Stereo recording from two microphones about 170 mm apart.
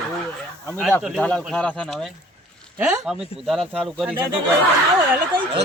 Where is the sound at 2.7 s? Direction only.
10° right (ahead or behind).